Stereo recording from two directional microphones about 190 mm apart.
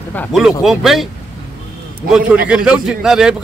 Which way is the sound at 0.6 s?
Centre (ahead or behind).